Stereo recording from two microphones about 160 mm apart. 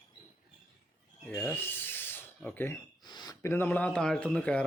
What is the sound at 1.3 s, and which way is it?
Filing, centre (ahead or behind).